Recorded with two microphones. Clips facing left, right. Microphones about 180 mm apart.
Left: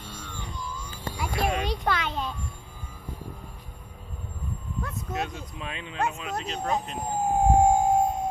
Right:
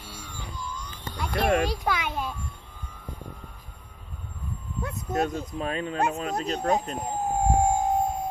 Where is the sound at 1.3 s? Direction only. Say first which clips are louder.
Right 5 dB; 60° right (ahead or behind).